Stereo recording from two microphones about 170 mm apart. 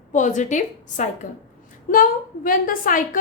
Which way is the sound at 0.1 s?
45° left (ahead or behind).